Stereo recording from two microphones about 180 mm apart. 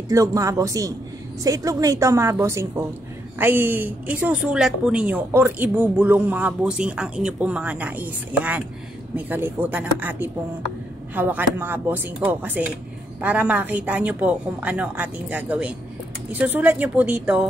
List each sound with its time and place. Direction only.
0.1 s a woman's voice: 20° right (ahead or behind)